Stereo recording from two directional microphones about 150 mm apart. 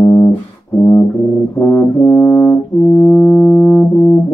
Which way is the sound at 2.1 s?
30° left (ahead or behind).